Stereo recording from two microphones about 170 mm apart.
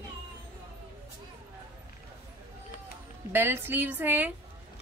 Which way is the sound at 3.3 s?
10° right (ahead or behind).